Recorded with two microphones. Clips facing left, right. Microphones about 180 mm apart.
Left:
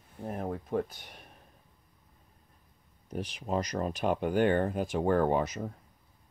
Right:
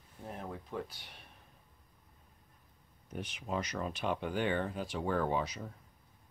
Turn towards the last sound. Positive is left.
turn(degrees=50)  # may be behind; listen again after turning